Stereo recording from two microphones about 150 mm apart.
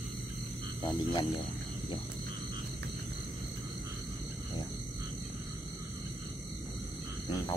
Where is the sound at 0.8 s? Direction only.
25° left (ahead or behind).